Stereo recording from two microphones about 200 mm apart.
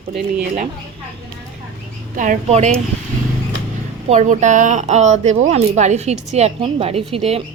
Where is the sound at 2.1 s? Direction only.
40° right (ahead or behind).